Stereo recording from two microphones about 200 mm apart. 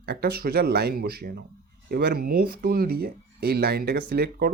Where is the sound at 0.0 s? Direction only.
55° right (ahead or behind).